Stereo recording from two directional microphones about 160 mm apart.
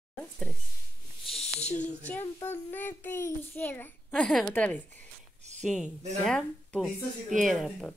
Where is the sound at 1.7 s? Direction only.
10° left (ahead or behind).